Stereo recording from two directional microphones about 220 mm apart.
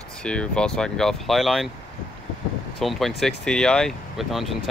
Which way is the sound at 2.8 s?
Centre (ahead or behind).